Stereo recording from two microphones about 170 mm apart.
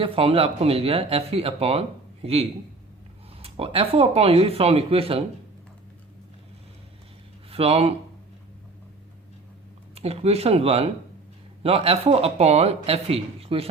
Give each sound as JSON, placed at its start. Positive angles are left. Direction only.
{"t": 0.0, "sound": "speech", "side_deg": -35}
{"t": 7.5, "sound": "speech", "side_deg": -35}
{"t": 9.9, "sound": "speech", "side_deg": -35}